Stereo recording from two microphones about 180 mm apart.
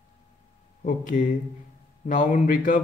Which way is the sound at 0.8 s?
45° left (ahead or behind).